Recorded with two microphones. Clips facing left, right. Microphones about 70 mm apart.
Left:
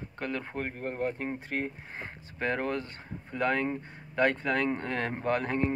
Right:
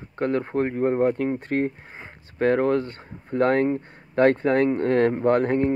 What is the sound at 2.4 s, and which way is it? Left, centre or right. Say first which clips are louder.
Speech: right 11 dB; right.